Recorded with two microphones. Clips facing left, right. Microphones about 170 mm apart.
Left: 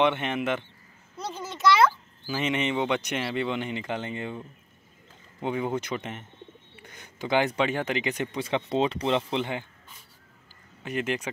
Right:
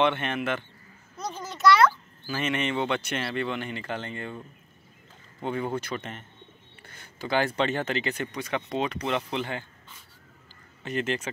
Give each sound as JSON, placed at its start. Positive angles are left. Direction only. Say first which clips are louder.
{"t": 0.0, "sound": "speech", "louder": "left 1 dB", "side_deg": 15}
{"t": 2.2, "sound": "speech", "louder": "left 1 dB", "side_deg": 15}
{"t": 10.8, "sound": "speech", "louder": "even", "side_deg": 10}